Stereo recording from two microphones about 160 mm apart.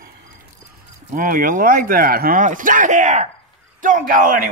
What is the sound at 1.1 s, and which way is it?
Speech, 60° right (ahead or behind).